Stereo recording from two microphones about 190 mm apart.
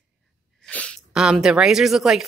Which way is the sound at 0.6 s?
5° left (ahead or behind).